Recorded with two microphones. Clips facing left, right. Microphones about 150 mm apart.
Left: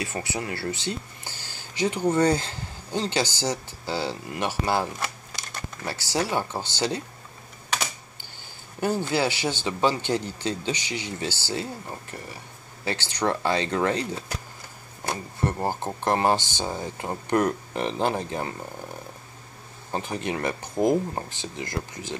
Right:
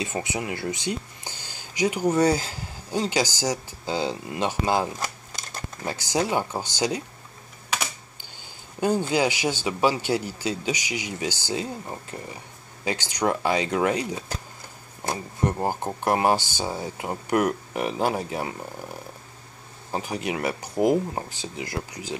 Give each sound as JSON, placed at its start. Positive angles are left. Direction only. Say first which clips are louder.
{"t": 0.0, "sound": "speech", "louder": "right 2 dB", "side_deg": -20}
{"t": 8.7, "sound": "speech", "louder": "right 2 dB", "side_deg": -15}